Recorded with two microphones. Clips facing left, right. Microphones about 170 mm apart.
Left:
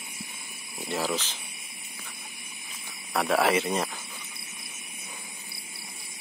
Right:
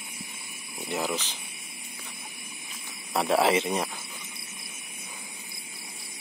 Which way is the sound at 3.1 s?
25° right (ahead or behind).